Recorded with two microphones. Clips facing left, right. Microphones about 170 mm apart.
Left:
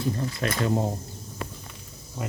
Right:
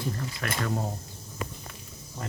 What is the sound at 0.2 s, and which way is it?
Speech, 25° left (ahead or behind).